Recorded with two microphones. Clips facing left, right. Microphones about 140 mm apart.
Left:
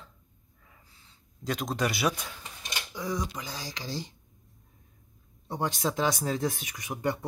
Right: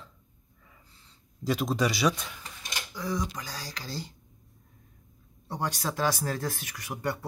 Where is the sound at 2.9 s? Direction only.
15° left (ahead or behind).